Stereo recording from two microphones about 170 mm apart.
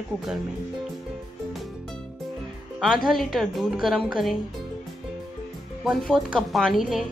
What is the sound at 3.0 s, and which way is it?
A woman's voice, centre (ahead or behind).